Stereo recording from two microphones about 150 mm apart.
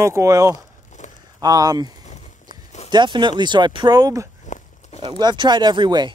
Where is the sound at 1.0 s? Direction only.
55° left (ahead or behind).